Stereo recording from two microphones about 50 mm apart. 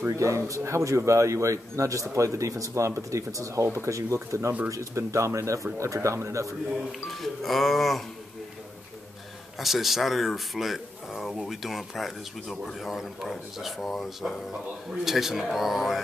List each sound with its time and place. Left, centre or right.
0.1 s speech: right
3.7 s speech: right
6.9 s speech: centre
9.6 s speech: centre